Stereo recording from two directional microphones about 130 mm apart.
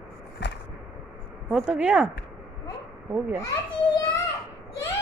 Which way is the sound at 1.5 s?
5° right (ahead or behind).